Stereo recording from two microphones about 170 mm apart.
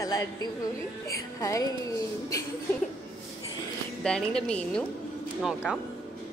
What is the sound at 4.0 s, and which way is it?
A woman's voice, 5° left (ahead or behind).